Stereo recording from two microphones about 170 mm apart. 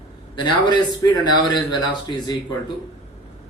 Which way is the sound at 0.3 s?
25° left (ahead or behind).